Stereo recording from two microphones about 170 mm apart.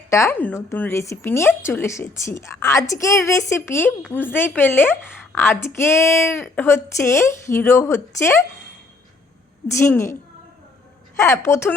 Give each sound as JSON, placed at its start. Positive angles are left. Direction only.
{"t": 0.1, "sound": "a woman's voice", "side_deg": 15}
{"t": 9.6, "sound": "a woman's voice", "side_deg": 15}
{"t": 11.2, "sound": "a woman's voice", "side_deg": 15}